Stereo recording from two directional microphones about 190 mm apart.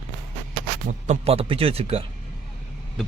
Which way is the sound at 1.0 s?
35° right (ahead or behind).